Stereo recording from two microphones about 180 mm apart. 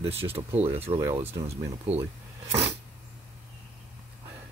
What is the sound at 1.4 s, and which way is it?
Speech, 35° right (ahead or behind).